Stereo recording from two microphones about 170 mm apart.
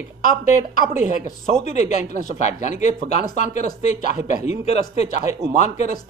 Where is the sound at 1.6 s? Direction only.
40° left (ahead or behind).